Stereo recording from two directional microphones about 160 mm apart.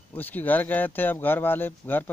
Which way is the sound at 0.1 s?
10° left (ahead or behind).